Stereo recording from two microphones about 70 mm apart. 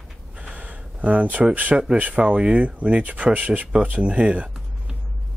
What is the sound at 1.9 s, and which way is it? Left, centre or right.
Speech, centre.